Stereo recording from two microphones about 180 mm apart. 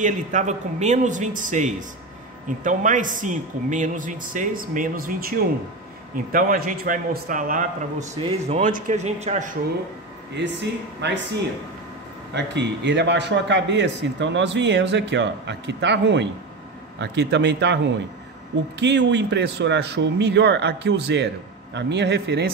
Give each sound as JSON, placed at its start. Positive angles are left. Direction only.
{"t": 0.0, "sound": "a man's voice", "side_deg": -40}
{"t": 8.2, "sound": "speech", "side_deg": -35}
{"t": 10.3, "sound": "speech", "side_deg": -75}
{"t": 12.4, "sound": "speech", "side_deg": -75}
{"t": 18.8, "sound": "speech", "side_deg": -75}